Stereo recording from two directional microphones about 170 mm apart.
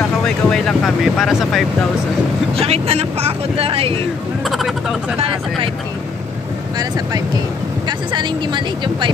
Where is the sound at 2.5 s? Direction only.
35° right (ahead or behind).